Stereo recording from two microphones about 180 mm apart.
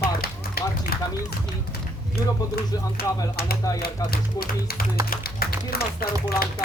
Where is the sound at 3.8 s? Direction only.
60° left (ahead or behind).